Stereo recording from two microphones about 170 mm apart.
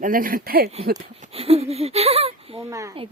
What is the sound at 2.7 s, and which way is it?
Speech, 20° right (ahead or behind).